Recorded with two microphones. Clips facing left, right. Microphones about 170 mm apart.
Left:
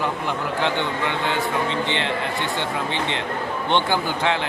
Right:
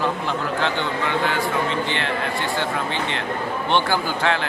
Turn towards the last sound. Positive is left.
turn(degrees=20)  # may be behind; listen again after turning